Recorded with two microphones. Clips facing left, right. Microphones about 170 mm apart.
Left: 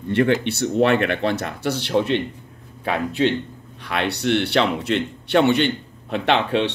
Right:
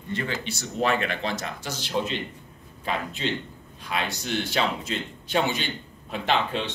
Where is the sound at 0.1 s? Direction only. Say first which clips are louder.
Left 12 dB; 65° left (ahead or behind).